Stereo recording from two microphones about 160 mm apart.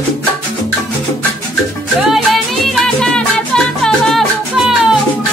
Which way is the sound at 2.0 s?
Centre (ahead or behind).